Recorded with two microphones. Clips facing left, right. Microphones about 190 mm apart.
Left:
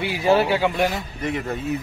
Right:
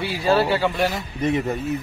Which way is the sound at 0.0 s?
20° left (ahead or behind).